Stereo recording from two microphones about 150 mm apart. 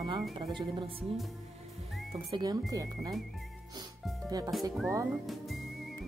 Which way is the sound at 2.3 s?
25° right (ahead or behind).